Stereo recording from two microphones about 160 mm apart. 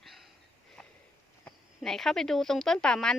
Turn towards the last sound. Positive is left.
turn(degrees=5)  # may be behind; listen again after turning